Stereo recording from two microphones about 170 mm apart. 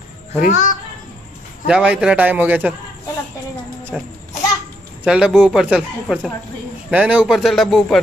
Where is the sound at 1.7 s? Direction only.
5° right (ahead or behind).